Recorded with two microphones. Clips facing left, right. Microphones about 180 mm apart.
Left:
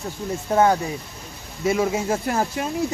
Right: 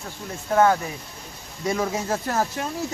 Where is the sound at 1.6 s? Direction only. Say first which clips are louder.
Left 4 dB; 10° left (ahead or behind).